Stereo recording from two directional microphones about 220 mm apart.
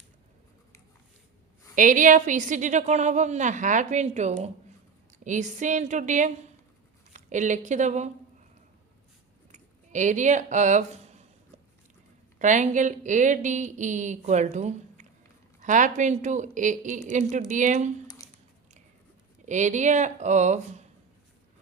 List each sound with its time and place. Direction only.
1.7 s a woman's voice: 35° right (ahead or behind)
9.5 s a sound: 35° right (ahead or behind)
12.4 s a woman's voice: 35° right (ahead or behind)
19.5 s a woman's voice: 35° right (ahead or behind)